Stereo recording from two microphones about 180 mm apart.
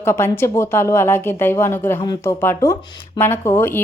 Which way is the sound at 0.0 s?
15° left (ahead or behind).